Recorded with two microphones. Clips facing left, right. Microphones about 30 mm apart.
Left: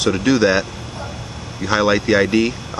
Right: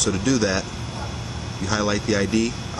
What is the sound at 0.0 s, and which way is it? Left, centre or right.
Speech, left.